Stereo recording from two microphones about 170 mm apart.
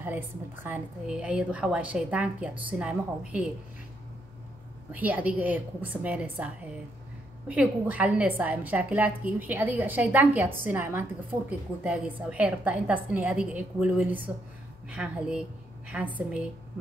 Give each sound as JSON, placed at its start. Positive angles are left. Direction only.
{"t": 0.7, "sound": "a woman's voice", "side_deg": -10}
{"t": 4.9, "sound": "a woman's voice", "side_deg": -10}